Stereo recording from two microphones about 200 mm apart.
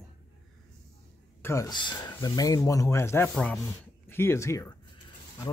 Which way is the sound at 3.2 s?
5° left (ahead or behind).